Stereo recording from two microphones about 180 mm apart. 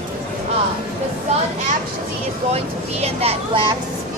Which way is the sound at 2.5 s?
35° right (ahead or behind).